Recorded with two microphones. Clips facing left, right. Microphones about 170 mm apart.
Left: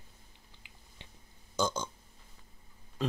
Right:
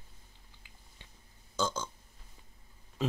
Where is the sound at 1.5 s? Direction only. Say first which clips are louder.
Left 2 dB; 15° left (ahead or behind).